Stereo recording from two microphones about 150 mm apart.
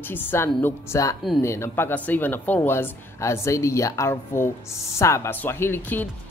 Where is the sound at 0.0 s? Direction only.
15° left (ahead or behind).